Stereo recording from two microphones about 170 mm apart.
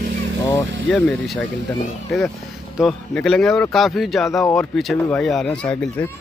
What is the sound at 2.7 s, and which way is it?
Speech, centre (ahead or behind).